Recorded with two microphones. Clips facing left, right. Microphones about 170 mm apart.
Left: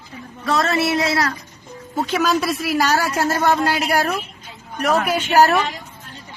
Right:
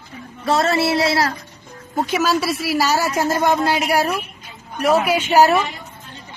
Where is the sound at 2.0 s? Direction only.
10° right (ahead or behind).